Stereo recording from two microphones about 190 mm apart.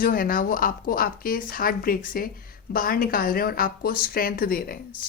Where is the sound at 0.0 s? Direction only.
50° left (ahead or behind).